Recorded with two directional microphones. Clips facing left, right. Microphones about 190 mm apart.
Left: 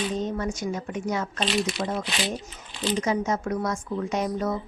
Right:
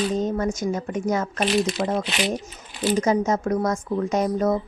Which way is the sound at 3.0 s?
45° right (ahead or behind).